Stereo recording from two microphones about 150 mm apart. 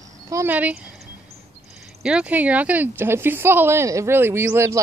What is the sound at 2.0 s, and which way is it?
A woman's voice, 10° right (ahead or behind).